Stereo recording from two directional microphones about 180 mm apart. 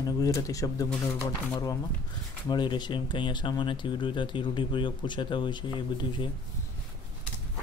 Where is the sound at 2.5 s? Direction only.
25° left (ahead or behind).